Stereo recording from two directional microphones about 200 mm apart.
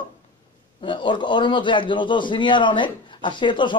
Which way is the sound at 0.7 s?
25° left (ahead or behind).